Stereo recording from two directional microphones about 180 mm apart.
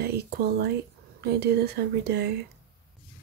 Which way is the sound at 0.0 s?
60° right (ahead or behind).